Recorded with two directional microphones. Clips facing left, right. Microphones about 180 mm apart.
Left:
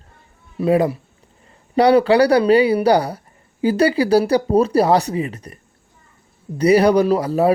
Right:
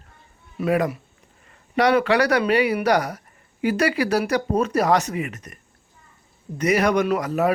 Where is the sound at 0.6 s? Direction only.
30° left (ahead or behind).